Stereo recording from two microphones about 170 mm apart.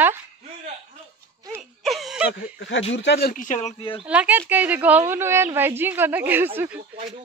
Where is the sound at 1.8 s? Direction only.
Centre (ahead or behind).